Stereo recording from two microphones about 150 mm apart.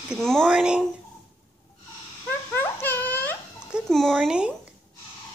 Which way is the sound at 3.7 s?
Centre (ahead or behind).